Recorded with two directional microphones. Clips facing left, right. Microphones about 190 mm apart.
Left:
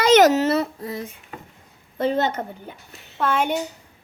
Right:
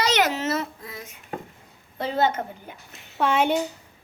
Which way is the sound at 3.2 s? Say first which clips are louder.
Even; 10° right (ahead or behind).